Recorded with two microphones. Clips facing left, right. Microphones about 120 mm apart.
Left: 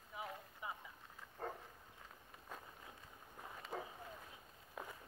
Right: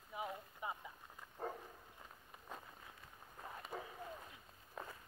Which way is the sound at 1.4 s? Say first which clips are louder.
Right 1 dB; 10° right (ahead or behind).